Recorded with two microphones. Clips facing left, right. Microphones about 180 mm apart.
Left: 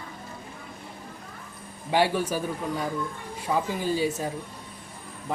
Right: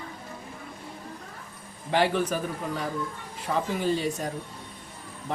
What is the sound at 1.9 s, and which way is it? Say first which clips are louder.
Speech: even; 10° left (ahead or behind).